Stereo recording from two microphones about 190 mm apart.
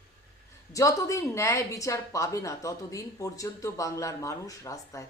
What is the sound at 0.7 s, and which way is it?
Speech, 15° left (ahead or behind).